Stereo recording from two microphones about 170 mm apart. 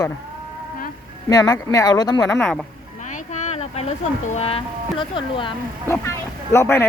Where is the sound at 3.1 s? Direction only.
45° left (ahead or behind).